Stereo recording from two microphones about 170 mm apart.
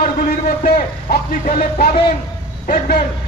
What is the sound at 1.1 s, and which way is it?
A man's voice, 55° left (ahead or behind).